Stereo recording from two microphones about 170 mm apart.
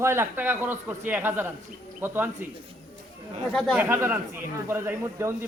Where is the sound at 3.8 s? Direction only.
15° right (ahead or behind).